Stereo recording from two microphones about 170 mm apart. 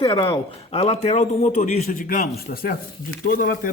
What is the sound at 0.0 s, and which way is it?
A man's voice, 30° left (ahead or behind).